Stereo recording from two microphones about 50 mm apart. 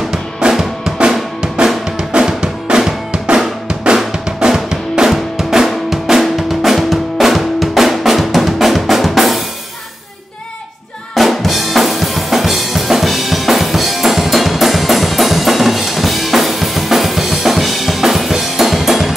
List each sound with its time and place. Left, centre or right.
0.1 s drum: centre
11.1 s drum kit: centre